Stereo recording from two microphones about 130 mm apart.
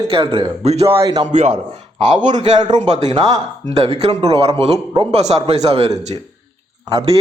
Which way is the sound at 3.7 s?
55° right (ahead or behind).